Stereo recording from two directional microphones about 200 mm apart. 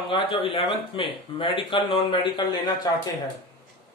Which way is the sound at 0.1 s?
25° left (ahead or behind).